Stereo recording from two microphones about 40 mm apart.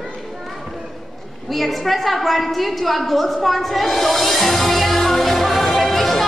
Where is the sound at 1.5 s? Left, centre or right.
Centre.